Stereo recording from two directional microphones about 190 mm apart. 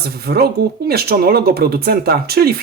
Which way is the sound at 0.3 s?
50° right (ahead or behind).